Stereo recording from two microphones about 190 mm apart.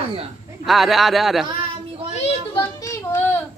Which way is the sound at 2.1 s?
35° left (ahead or behind).